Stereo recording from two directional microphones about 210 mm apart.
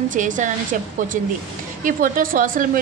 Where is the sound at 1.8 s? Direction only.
40° right (ahead or behind).